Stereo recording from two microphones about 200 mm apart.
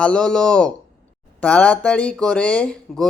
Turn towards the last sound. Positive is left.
turn(degrees=5)  # may be behind; listen again after turning